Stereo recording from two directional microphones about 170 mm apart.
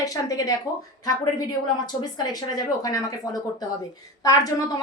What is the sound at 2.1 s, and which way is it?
A woman's voice, 20° left (ahead or behind).